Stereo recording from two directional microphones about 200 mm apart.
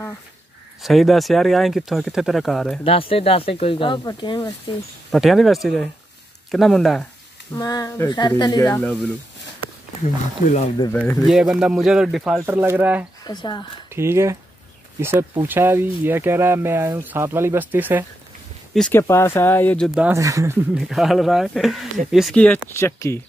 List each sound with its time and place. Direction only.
0.8 s speech: centre (ahead or behind)
2.8 s speech: 30° left (ahead or behind)
5.1 s speech: centre (ahead or behind)
7.5 s speech: 15° left (ahead or behind)
8.8 s speech: 5° left (ahead or behind)
10.0 s speech: 35° left (ahead or behind)
10.9 s speech: 10° left (ahead or behind); by 13.0 s 10° right (ahead or behind)
13.2 s speech: 20° left (ahead or behind)
13.9 s speech: 15° right (ahead or behind)
18.7 s speech: 5° left (ahead or behind)
20.1 s speech: 15° right (ahead or behind)
20.7 s speech: centre (ahead or behind)